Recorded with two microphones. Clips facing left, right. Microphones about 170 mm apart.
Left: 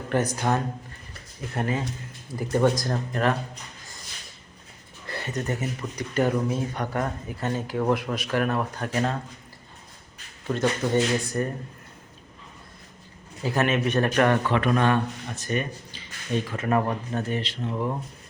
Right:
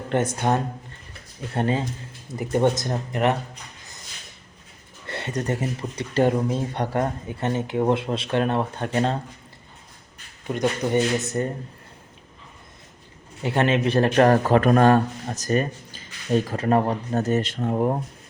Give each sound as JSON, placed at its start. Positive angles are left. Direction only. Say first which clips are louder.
{"t": 0.1, "sound": "speech", "louder": "right 2 dB", "side_deg": -25}
{"t": 5.0, "sound": "speech", "louder": "right 3 dB", "side_deg": -25}
{"t": 10.4, "sound": "speech", "louder": "right 1 dB", "side_deg": -15}
{"t": 13.4, "sound": "a man's voice", "louder": "right 3 dB", "side_deg": -25}